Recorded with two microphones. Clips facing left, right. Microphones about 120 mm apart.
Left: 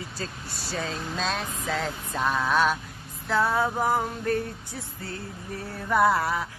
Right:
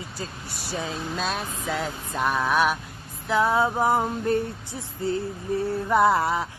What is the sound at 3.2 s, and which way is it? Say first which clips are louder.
Music: right 3 dB; 15° right (ahead or behind).